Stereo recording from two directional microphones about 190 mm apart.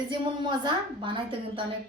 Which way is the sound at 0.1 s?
25° right (ahead or behind).